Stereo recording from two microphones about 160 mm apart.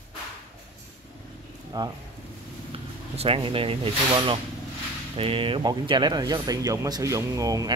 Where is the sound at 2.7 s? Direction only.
40° right (ahead or behind).